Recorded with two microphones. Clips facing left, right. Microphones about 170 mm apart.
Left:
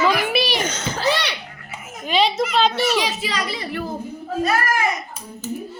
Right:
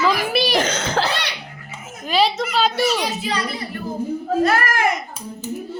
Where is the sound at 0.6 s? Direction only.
90° right.